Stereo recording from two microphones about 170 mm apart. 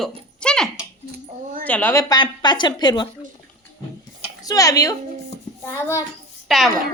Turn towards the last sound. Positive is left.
turn(degrees=0)  # may be behind; listen again after turning